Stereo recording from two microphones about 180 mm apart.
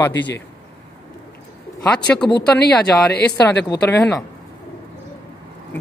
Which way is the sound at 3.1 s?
60° left (ahead or behind).